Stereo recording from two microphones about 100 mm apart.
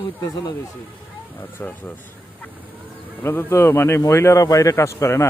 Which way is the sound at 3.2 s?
25° left (ahead or behind).